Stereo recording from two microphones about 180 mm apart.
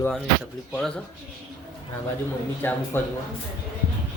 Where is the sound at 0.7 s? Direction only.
5° left (ahead or behind).